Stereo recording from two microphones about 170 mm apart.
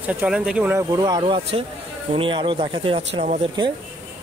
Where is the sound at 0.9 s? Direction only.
25° right (ahead or behind); by 3.5 s 40° right (ahead or behind).